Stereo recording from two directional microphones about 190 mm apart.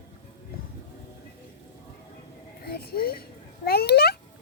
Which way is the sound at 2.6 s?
55° left (ahead or behind).